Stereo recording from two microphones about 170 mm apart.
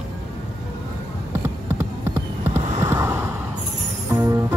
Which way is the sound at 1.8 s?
15° right (ahead or behind).